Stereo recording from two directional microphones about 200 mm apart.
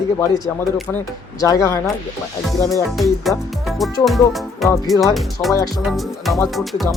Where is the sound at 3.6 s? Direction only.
Centre (ahead or behind).